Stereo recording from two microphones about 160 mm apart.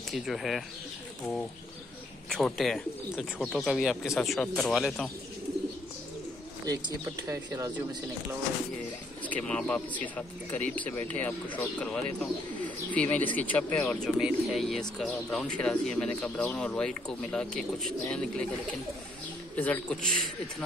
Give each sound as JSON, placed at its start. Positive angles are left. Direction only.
{"t": 0.1, "sound": "speech", "side_deg": 0}
{"t": 2.2, "sound": "speech", "side_deg": 0}
{"t": 7.2, "sound": "speech", "side_deg": -20}
{"t": 9.2, "sound": "speech", "side_deg": 10}
{"t": 19.5, "sound": "speech", "side_deg": 10}